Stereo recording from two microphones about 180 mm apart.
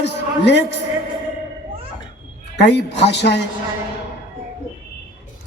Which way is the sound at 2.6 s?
75° left (ahead or behind).